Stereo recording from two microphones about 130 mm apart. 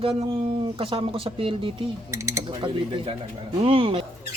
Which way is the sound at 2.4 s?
40° right (ahead or behind).